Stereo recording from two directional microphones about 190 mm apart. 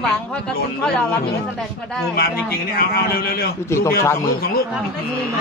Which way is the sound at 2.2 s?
55° left (ahead or behind).